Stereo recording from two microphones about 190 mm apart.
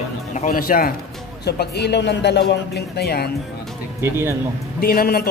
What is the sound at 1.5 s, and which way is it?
Speech, 60° left (ahead or behind).